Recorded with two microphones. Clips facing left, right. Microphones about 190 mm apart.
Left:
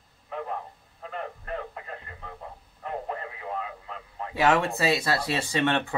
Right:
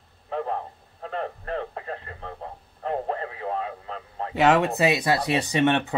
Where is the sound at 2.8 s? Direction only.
35° right (ahead or behind).